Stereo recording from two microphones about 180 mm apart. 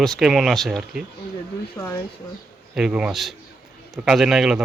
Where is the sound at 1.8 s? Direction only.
15° left (ahead or behind).